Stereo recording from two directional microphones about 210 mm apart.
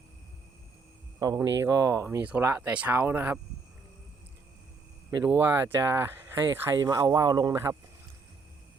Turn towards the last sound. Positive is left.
turn(degrees=-15)  # may be behind; listen again after turning